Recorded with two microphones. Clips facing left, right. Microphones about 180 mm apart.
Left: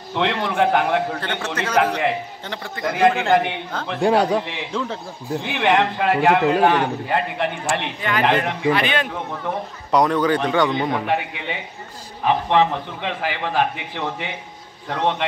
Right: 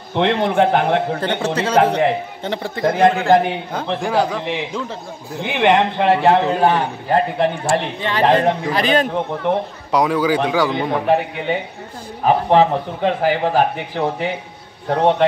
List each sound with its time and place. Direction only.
0.1 s a man's voice: 55° right (ahead or behind)
0.7 s a man's voice: 25° right (ahead or behind)
3.0 s a man's voice: 40° right (ahead or behind)
4.0 s a man's voice: 30° left (ahead or behind)
5.4 s a man's voice: 20° right (ahead or behind); by 9.1 s 40° right (ahead or behind)
9.8 s speech: 5° right (ahead or behind)
11.1 s a man's voice: 40° right (ahead or behind)